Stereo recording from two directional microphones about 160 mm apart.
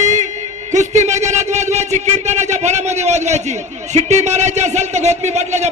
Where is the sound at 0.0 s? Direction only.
50° right (ahead or behind).